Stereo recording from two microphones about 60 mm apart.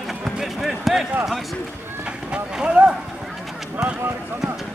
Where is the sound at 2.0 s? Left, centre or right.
Centre.